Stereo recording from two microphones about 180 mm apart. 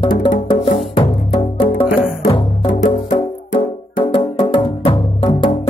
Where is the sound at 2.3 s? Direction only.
30° left (ahead or behind).